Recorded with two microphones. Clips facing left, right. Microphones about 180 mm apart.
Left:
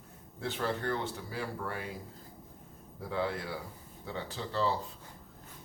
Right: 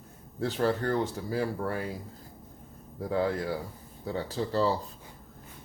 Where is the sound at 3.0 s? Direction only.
40° right (ahead or behind).